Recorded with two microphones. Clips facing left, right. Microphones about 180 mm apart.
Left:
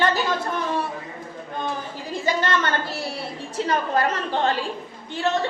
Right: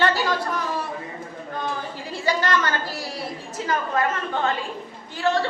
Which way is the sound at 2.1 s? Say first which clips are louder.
Even; 25° left (ahead or behind).